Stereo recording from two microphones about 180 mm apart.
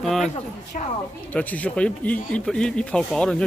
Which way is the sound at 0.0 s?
Centre (ahead or behind).